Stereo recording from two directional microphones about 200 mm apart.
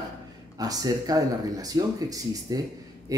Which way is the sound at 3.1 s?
15° right (ahead or behind).